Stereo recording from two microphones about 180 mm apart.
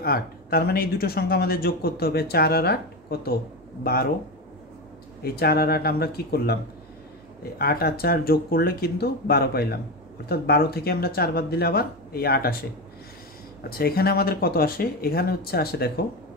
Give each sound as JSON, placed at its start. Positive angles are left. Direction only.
{"t": 0.0, "sound": "speech", "side_deg": 55}
{"t": 5.2, "sound": "speech", "side_deg": 60}
{"t": 13.7, "sound": "speech", "side_deg": 60}